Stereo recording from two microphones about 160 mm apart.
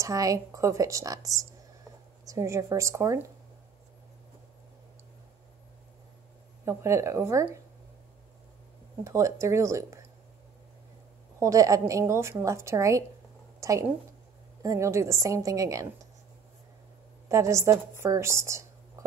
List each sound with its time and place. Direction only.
0.0 s a woman's voice: 20° right (ahead or behind)
6.6 s a woman's voice: 20° right (ahead or behind)
9.0 s a woman's voice: 20° right (ahead or behind)
11.3 s a woman's voice: 20° right (ahead or behind)
17.3 s a woman's voice: 20° right (ahead or behind)